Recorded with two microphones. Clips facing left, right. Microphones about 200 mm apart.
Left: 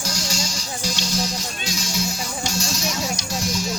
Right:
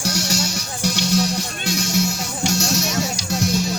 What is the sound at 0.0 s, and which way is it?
Music, 65° right (ahead or behind).